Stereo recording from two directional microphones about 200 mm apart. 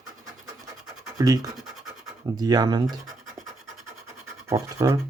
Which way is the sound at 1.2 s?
20° right (ahead or behind).